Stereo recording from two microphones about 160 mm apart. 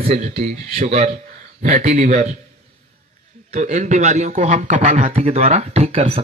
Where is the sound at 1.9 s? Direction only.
55° right (ahead or behind).